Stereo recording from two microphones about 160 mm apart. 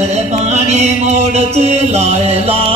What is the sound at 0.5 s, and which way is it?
Mantra, 45° right (ahead or behind).